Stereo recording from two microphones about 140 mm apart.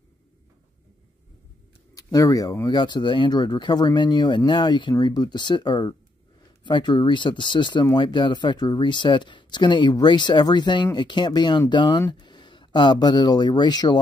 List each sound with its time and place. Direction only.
2.0 s speech: 25° left (ahead or behind)